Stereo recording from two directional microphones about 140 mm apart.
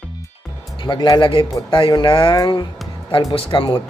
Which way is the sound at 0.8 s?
30° left (ahead or behind).